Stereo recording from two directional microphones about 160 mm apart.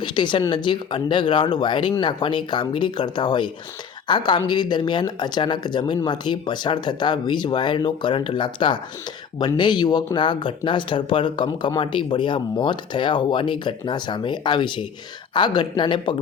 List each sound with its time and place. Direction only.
0.0 s speech: 30° left (ahead or behind)